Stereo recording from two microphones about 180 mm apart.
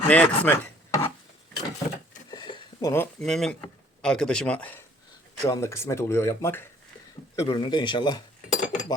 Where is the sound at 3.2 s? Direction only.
Centre (ahead or behind).